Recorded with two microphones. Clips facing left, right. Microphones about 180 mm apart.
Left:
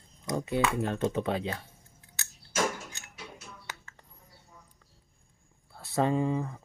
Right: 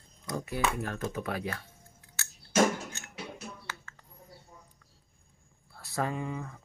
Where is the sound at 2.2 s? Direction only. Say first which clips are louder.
Right 1 dB; 15° left (ahead or behind).